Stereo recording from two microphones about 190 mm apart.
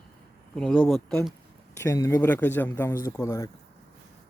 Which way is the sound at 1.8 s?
15° left (ahead or behind).